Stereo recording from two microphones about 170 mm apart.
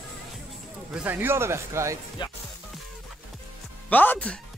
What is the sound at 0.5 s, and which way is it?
Speech, 5° right (ahead or behind).